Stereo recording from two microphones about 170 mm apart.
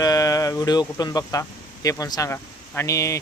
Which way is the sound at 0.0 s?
20° left (ahead or behind).